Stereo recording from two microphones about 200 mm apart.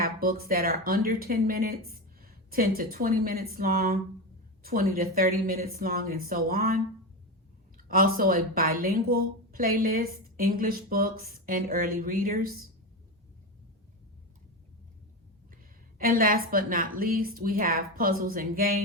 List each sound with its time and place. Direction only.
0.0 s a woman's voice: 50° right (ahead or behind)
16.0 s a woman's voice: 45° right (ahead or behind)